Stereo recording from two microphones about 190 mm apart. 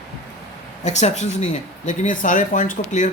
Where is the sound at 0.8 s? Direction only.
35° left (ahead or behind).